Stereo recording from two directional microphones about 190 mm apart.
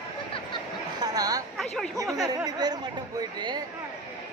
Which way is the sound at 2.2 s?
20° right (ahead or behind).